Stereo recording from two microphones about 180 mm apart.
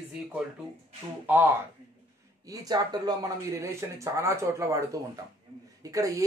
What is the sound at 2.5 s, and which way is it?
Speech, 20° right (ahead or behind).